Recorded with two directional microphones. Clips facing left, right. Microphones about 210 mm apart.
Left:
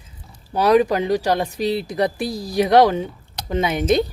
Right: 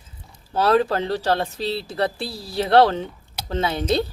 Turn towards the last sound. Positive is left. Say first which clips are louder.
# left 4 dB
turn(degrees=15)  # may be behind; listen again after turning